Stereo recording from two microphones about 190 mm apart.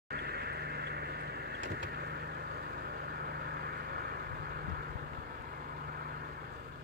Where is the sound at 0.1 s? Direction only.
60° right (ahead or behind).